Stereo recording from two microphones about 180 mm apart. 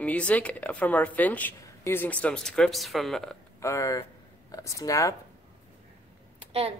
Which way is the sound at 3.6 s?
15° left (ahead or behind).